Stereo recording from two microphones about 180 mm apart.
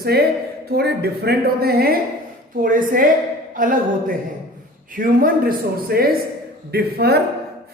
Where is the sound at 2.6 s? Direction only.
50° right (ahead or behind).